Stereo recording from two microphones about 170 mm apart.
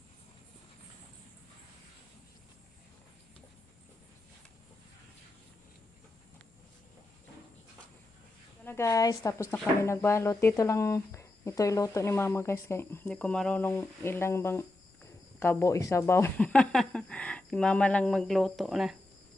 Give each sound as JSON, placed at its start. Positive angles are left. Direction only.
{"t": 8.6, "sound": "speech", "side_deg": 15}